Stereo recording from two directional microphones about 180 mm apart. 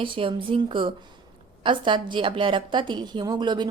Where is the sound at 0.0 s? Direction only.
30° right (ahead or behind).